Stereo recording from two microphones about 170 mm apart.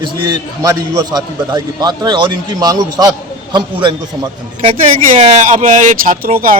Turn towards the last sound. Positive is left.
turn(degrees=-60)  # may be behind; listen again after turning